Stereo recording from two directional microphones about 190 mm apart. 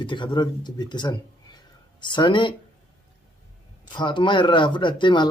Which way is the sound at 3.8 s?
25° left (ahead or behind).